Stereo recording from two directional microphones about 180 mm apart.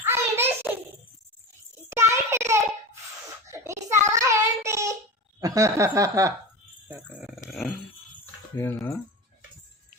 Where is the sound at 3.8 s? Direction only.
15° right (ahead or behind).